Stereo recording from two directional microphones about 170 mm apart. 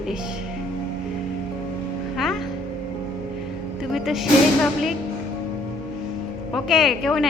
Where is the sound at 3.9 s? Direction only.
Centre (ahead or behind).